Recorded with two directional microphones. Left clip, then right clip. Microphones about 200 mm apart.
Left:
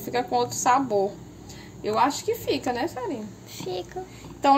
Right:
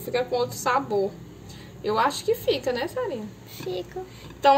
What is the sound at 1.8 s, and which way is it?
A woman's voice, 55° left (ahead or behind).